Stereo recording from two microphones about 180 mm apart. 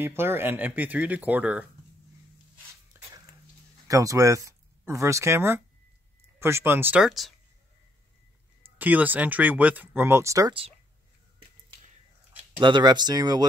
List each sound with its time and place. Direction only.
0.0 s speech: 15° right (ahead or behind)
3.8 s speech: 20° right (ahead or behind); by 7.3 s centre (ahead or behind)
8.7 s speech: 10° right (ahead or behind)
12.5 s speech: 25° right (ahead or behind)